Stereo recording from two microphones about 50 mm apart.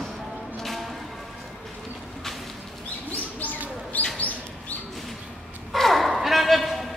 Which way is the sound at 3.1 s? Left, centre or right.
Left.